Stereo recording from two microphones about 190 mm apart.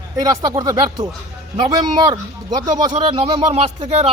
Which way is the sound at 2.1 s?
20° right (ahead or behind).